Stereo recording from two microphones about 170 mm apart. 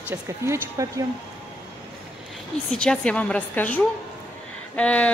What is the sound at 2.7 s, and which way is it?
A woman's voice, 5° left (ahead or behind).